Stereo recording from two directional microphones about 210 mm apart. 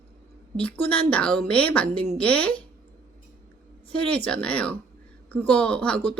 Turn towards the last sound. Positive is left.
turn(degrees=5)  # may be behind; listen again after turning